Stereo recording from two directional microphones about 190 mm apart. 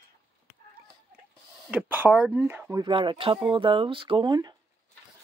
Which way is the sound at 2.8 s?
25° right (ahead or behind).